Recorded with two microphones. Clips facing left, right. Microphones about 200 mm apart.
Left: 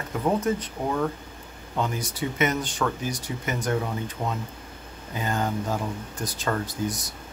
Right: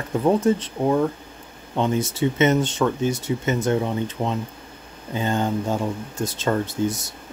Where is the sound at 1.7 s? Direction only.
25° right (ahead or behind).